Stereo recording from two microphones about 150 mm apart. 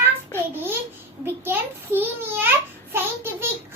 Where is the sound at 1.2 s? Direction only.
15° right (ahead or behind).